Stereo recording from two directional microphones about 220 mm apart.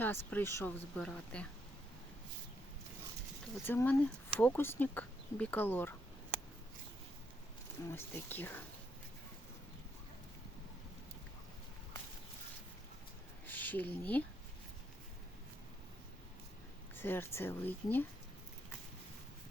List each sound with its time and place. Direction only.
0.0 s speech: 10° left (ahead or behind)
3.7 s speech: 10° left (ahead or behind)
7.9 s speech: 10° left (ahead or behind)
13.5 s speech: 10° left (ahead or behind)
16.9 s speech: 10° left (ahead or behind)